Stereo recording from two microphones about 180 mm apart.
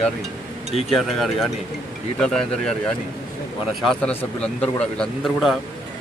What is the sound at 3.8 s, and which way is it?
Speech, 5° left (ahead or behind).